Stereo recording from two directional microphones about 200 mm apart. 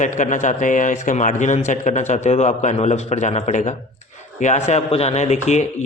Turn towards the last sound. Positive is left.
turn(degrees=35)  # may be behind; listen again after turning